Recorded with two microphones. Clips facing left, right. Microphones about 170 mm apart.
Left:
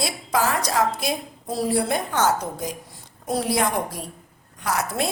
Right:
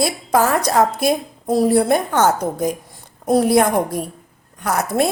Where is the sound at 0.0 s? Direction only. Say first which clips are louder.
Right 6 dB; 50° right (ahead or behind).